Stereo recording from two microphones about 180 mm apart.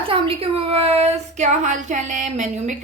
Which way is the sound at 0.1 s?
30° right (ahead or behind).